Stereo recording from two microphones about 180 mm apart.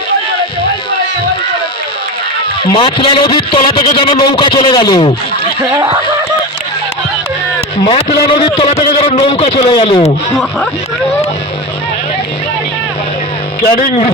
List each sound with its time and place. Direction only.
2.6 s a man's voice: 30° left (ahead or behind)
7.9 s a man's voice: 30° left (ahead or behind)